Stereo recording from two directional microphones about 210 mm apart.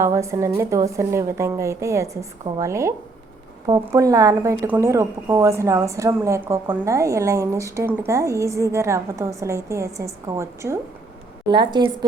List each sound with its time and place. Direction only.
0.0 s a woman's voice: 15° right (ahead or behind)